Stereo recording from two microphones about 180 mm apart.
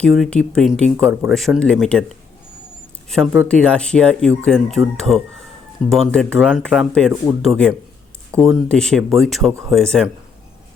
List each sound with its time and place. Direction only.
0.0 s speech: 5° left (ahead or behind)
3.5 s speech: 5° left (ahead or behind)
9.5 s speech: 15° right (ahead or behind)
9.7 s speech: 5° left (ahead or behind)